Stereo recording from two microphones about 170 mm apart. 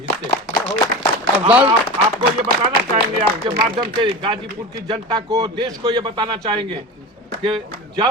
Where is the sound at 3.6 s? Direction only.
30° right (ahead or behind).